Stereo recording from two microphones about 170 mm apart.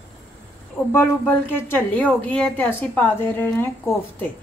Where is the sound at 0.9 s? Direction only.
10° left (ahead or behind).